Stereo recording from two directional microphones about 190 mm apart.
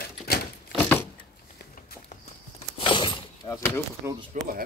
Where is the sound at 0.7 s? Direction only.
10° left (ahead or behind).